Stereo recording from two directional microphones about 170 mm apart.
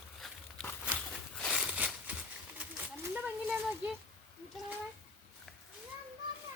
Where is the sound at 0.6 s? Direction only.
5° left (ahead or behind).